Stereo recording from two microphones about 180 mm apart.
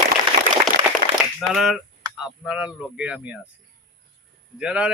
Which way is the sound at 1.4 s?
Centre (ahead or behind).